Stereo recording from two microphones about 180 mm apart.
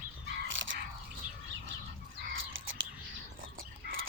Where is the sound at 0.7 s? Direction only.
90° right.